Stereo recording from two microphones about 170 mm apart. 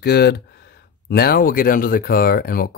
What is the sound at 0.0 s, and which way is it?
Speech, 70° left (ahead or behind).